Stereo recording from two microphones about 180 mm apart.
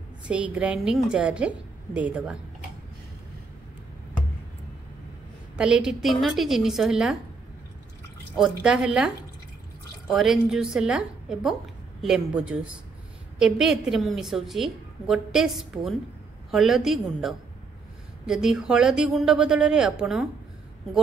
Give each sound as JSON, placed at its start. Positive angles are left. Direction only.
{"t": 0.3, "sound": "a woman's voice", "side_deg": -5}
{"t": 5.6, "sound": "a woman's voice", "side_deg": -5}
{"t": 8.4, "sound": "a woman's voice", "side_deg": -5}